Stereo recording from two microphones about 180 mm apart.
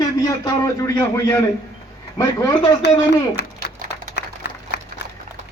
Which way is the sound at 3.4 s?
70° left (ahead or behind).